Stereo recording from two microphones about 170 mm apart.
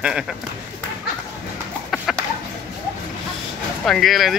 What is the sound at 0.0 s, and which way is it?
Speech, 5° right (ahead or behind).